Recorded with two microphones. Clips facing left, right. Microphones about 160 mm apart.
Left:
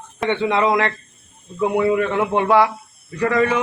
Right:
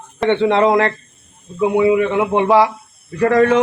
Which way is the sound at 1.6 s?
10° right (ahead or behind).